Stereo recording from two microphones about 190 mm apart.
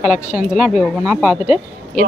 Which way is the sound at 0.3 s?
5° right (ahead or behind).